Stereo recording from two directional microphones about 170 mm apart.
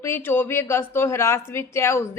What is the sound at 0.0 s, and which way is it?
Speech, 15° left (ahead or behind).